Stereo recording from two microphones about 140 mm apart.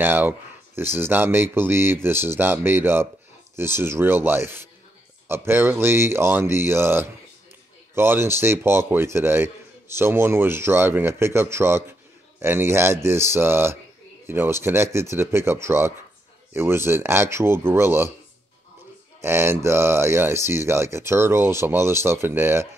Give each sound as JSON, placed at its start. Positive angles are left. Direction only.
{"t": 0.0, "sound": "a man's voice", "side_deg": -15}
{"t": 19.2, "sound": "a man's voice", "side_deg": -15}